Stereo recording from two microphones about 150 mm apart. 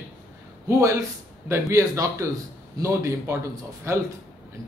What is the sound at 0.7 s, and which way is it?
A man's voice, 20° right (ahead or behind).